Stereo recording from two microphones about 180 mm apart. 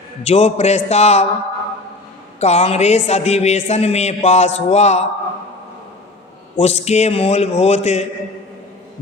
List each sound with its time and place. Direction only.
0.3 s a man's voice: 35° left (ahead or behind)
2.4 s a man's voice: 35° left (ahead or behind)
6.6 s a man's voice: 35° left (ahead or behind)